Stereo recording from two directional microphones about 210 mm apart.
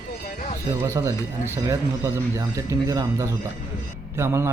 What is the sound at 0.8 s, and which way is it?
A man's voice, 15° right (ahead or behind).